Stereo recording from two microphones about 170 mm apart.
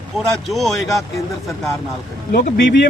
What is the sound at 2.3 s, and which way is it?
Speech, 70° left (ahead or behind).